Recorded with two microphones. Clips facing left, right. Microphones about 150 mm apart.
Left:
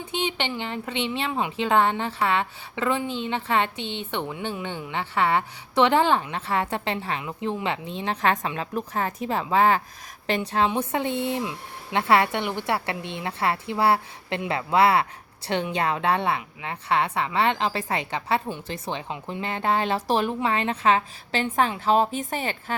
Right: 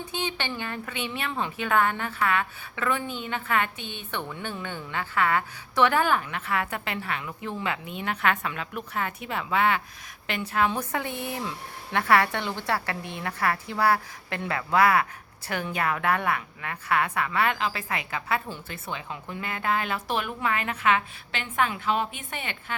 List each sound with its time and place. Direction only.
0.1 s a woman's voice: 20° left (ahead or behind)
1.3 s a woman's voice: 15° left (ahead or behind)
1.5 s a woman's voice: 25° left (ahead or behind)
10.8 s a woman's voice: 25° left (ahead or behind)